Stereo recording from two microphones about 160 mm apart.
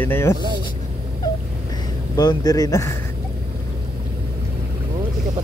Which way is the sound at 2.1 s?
25° left (ahead or behind).